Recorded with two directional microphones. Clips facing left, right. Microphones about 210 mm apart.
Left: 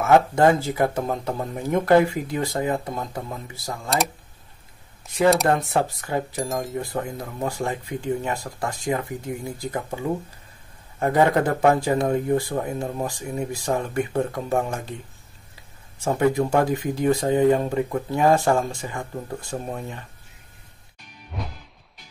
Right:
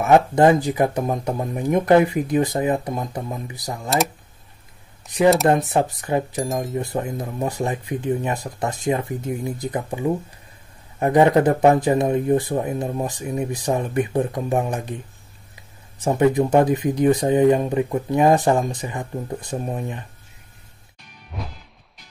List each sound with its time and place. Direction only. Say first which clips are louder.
0.0 s speech: right 2 dB; 15° right (ahead or behind)
5.0 s speech: right 3 dB; 20° right (ahead or behind)
6.3 s speech: right 2 dB; centre (ahead or behind)
6.7 s speech: right 3 dB; 20° right (ahead or behind)
16.0 s speech: right 3 dB; 20° right (ahead or behind)
21.3 s music: even; centre (ahead or behind)